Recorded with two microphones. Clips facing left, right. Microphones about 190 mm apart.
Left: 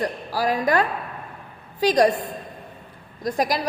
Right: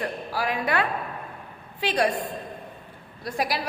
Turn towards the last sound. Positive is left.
turn(degrees=40)  # may be behind; listen again after turning